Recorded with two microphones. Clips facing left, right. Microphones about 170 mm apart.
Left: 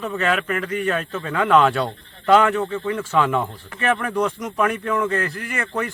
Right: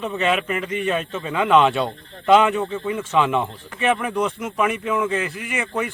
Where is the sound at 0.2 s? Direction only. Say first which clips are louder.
Right 1 dB; 20° right (ahead or behind).